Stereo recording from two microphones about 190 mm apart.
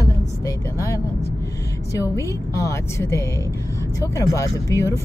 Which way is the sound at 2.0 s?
15° left (ahead or behind).